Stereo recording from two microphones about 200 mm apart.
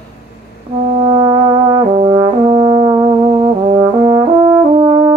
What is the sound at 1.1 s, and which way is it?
Brass instrument, 20° right (ahead or behind).